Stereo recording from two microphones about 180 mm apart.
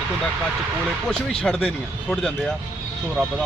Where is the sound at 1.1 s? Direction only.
5° left (ahead or behind).